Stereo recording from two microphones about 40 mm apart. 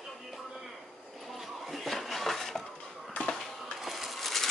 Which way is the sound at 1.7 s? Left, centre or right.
Centre.